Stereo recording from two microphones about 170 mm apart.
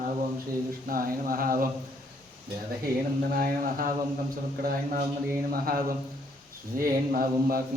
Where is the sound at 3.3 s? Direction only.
60° right (ahead or behind).